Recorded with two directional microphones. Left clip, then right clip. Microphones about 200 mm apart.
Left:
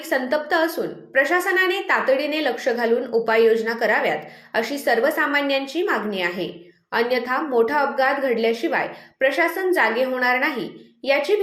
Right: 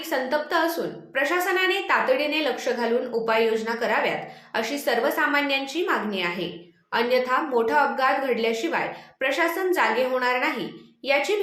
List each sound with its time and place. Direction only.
0.1 s a woman's voice: 20° left (ahead or behind)